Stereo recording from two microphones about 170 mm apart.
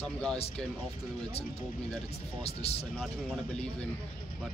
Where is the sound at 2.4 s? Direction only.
35° left (ahead or behind).